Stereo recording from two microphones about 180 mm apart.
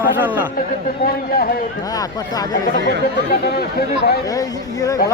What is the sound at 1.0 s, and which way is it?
Speech, 55° left (ahead or behind).